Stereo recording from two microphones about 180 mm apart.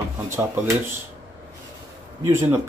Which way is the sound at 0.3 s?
10° right (ahead or behind).